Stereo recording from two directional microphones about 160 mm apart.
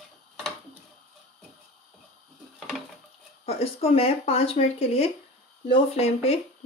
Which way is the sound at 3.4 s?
40° left (ahead or behind).